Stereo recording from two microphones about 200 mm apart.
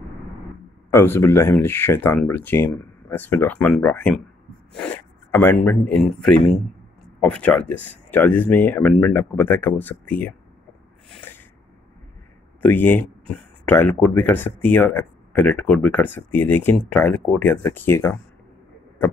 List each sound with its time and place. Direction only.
0.8 s speech: 15° left (ahead or behind)
11.1 s a sound: 10° left (ahead or behind)
12.6 s speech: 10° left (ahead or behind)